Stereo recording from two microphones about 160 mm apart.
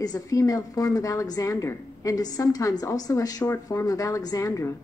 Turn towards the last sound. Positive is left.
turn(degrees=20)  # may be behind; listen again after turning